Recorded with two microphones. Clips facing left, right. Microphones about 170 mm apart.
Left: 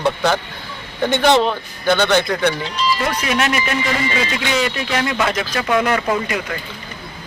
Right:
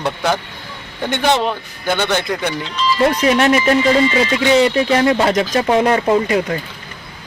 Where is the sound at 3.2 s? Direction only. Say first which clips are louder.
Right 7 dB; 30° right (ahead or behind).